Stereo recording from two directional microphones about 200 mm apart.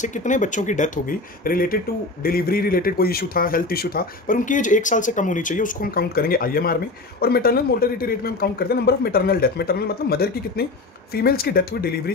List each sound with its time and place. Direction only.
0.0 s speech: 40° left (ahead or behind)